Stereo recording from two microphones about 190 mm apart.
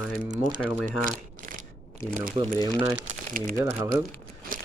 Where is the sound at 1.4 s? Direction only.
45° right (ahead or behind).